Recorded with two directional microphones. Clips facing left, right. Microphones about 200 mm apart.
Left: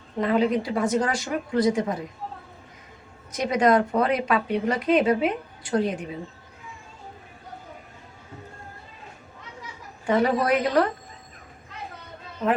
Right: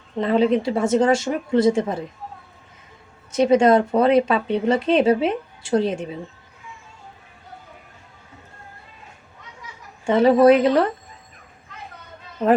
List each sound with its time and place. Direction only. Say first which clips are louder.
0.2 s speech: right 4 dB; 25° right (ahead or behind)
3.3 s speech: right 5 dB; 25° right (ahead or behind)
10.1 s speech: right 8 dB; 25° right (ahead or behind)